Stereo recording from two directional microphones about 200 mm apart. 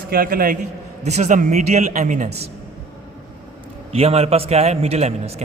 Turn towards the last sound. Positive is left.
turn(degrees=-30)  # may be behind; listen again after turning